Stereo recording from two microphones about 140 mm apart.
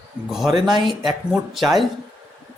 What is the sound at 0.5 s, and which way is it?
Speech, 35° right (ahead or behind).